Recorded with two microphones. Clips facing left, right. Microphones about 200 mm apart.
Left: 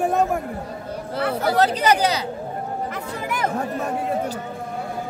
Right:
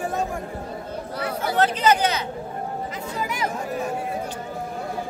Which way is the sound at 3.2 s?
55° left (ahead or behind).